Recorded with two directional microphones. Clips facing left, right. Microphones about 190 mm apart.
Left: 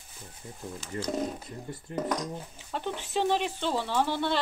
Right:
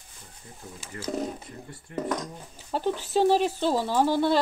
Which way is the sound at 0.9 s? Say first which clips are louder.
Left 1 dB; 25° left (ahead or behind).